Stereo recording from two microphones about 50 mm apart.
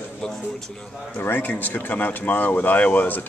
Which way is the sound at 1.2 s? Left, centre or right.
Left.